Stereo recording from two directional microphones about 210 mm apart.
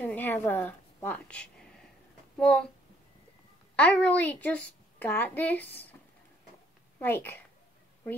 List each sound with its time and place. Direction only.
0.0 s a woman's voice: 10° left (ahead or behind)
3.7 s a child's voice: 5° left (ahead or behind)
7.0 s a child's voice: 10° left (ahead or behind)